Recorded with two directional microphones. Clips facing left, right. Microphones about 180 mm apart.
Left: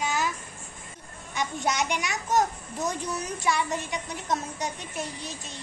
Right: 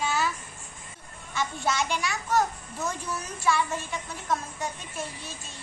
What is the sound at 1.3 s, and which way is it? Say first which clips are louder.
A child's voice: even; 20° left (ahead or behind).